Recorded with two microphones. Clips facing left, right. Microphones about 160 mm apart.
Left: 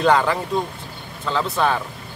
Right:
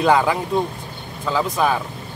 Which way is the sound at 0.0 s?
5° right (ahead or behind).